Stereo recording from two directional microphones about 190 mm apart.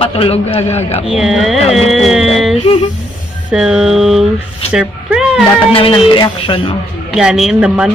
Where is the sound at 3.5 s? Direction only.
5° right (ahead or behind).